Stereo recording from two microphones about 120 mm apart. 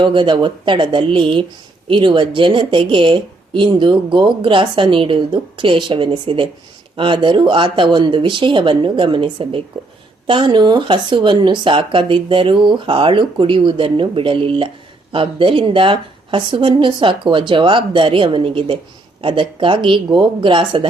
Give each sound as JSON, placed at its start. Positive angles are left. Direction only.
{"t": 0.0, "sound": "a woman's voice", "side_deg": -40}